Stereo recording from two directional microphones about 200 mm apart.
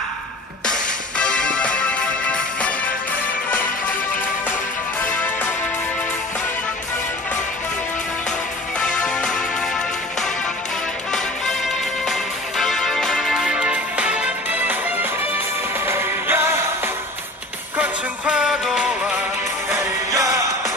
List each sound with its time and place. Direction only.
0.7 s music: 5° left (ahead or behind)
5.1 s music: 10° left (ahead or behind)
8.7 s music: 5° left (ahead or behind)
11.1 s music: centre (ahead or behind)
19.7 s music: 15° right (ahead or behind)